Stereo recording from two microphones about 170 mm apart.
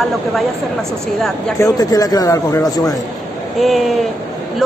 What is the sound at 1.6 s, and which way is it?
Speech, 20° left (ahead or behind).